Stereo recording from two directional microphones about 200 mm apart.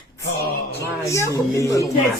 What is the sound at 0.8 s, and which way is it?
A man's voice, 15° left (ahead or behind).